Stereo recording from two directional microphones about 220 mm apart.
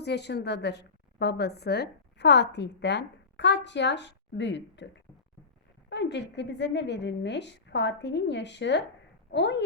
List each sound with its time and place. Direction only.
0.0 s a woman's voice: 50° left (ahead or behind)
5.9 s a woman's voice: 50° left (ahead or behind)